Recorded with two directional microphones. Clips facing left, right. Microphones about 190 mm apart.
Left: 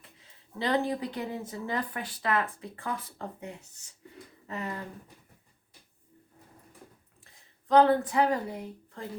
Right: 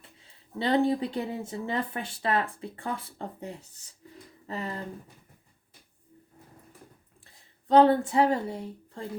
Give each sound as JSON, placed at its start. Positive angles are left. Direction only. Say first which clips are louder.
{"t": 0.0, "sound": "speech", "louder": "right 1 dB", "side_deg": -30}
{"t": 7.3, "sound": "speech", "louder": "right 2 dB", "side_deg": -30}